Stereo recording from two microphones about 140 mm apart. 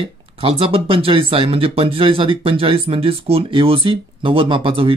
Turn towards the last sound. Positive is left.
turn(degrees=-40)  # may be behind; listen again after turning